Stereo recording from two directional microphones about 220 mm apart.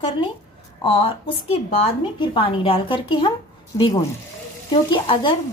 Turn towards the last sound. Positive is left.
turn(degrees=20)  # may be behind; listen again after turning